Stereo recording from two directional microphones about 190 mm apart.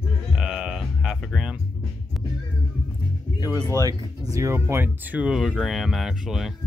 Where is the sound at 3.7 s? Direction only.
15° right (ahead or behind).